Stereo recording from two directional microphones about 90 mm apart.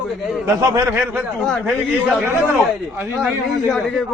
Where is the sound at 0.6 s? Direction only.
40° right (ahead or behind).